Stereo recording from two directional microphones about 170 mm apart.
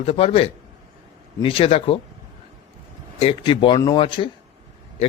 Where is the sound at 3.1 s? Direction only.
35° left (ahead or behind).